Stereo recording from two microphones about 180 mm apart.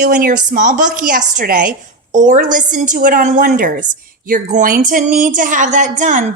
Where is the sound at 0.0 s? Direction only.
50° right (ahead or behind).